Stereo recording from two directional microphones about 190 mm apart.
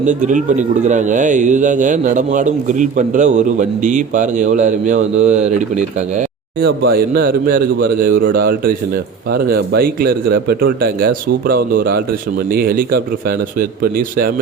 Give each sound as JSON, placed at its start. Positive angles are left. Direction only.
{"t": 0.0, "sound": "speech", "side_deg": -40}
{"t": 6.6, "sound": "a man's voice", "side_deg": -55}